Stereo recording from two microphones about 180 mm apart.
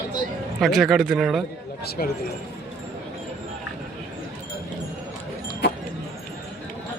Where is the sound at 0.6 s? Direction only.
Centre (ahead or behind).